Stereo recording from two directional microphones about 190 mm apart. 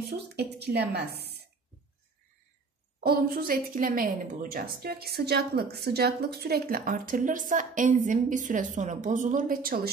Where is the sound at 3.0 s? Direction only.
50° right (ahead or behind).